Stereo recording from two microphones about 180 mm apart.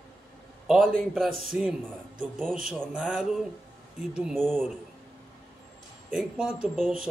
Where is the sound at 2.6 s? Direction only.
5° right (ahead or behind).